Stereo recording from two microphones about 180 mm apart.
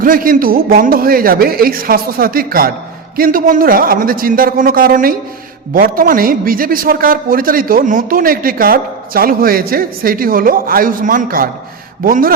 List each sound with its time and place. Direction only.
0.0 s a man's voice: 50° right (ahead or behind)